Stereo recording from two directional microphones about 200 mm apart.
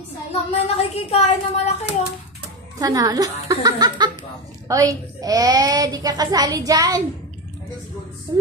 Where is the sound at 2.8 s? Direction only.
20° right (ahead or behind).